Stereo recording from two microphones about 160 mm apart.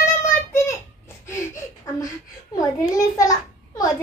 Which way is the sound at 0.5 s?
15° left (ahead or behind).